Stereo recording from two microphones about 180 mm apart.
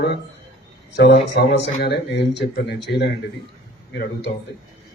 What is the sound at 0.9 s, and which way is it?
Speech, 70° left (ahead or behind).